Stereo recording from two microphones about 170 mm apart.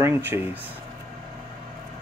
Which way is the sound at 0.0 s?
10° right (ahead or behind).